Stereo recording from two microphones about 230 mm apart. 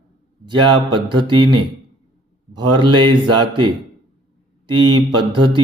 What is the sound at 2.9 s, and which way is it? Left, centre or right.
Speech, centre.